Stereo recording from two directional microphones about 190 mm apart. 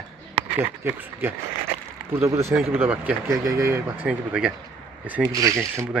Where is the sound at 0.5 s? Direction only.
10° right (ahead or behind).